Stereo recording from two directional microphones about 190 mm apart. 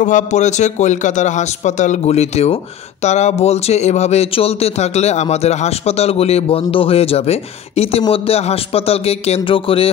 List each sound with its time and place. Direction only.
0.0 s speech: 40° left (ahead or behind)